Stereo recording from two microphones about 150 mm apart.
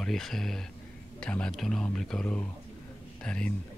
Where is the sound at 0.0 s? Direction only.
Centre (ahead or behind).